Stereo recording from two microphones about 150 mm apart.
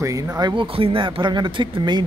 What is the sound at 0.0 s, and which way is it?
Speech, 25° right (ahead or behind).